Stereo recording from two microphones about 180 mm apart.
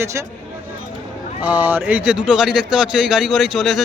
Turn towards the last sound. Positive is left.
turn(degrees=0)  # may be behind; listen again after turning